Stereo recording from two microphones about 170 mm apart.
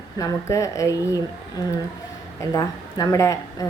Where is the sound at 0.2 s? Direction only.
20° left (ahead or behind).